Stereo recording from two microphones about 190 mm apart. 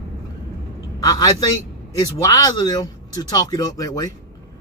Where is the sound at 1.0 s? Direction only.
20° left (ahead or behind).